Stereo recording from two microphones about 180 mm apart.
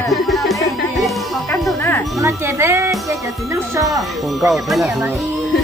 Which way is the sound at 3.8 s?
Centre (ahead or behind).